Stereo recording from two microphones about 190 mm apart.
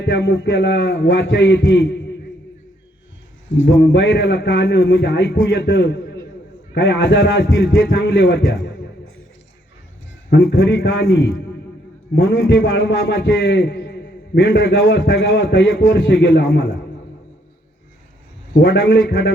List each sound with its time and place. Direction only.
0.0 s a man's voice: 90° left
3.6 s a man's voice: 80° left
5.0 s a man's voice: 55° left (ahead or behind); by 5.5 s 75° left (ahead or behind)
5.7 s a man's voice: 55° left (ahead or behind)
6.7 s a man's voice: 70° left (ahead or behind); by 8.4 s 85° left
10.4 s a man's voice: 90° left
13.6 s a man's voice: 60° left (ahead or behind); by 16.6 s 85° left
18.5 s a man's voice: 80° left
18.9 s a man's voice: 90° left